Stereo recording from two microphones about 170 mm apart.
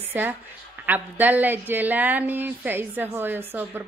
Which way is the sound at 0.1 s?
10° right (ahead or behind).